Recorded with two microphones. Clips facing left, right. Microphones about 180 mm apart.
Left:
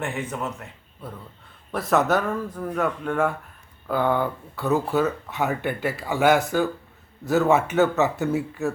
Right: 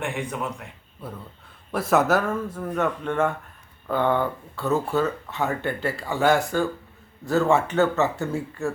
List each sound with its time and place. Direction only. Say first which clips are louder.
0.0 s speech: even; centre (ahead or behind)
1.7 s speech: right 1 dB; centre (ahead or behind)
4.9 s speech: left 1 dB; centre (ahead or behind)
5.6 s speech: left 1 dB; 15° left (ahead or behind)